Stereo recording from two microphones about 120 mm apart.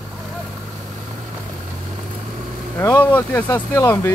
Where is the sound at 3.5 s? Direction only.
35° left (ahead or behind).